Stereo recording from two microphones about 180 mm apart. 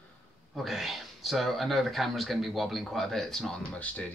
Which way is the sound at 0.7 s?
Centre (ahead or behind).